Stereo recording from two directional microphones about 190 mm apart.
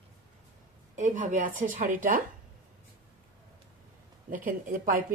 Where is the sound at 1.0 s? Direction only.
40° right (ahead or behind).